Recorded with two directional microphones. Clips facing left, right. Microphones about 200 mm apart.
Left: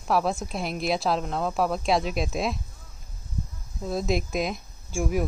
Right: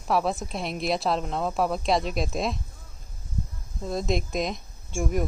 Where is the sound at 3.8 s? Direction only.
Centre (ahead or behind).